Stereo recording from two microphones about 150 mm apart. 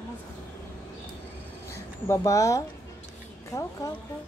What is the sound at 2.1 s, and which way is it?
Speech, 20° left (ahead or behind).